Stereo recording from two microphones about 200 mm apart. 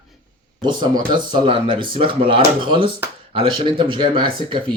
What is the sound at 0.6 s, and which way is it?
Speech, 20° right (ahead or behind).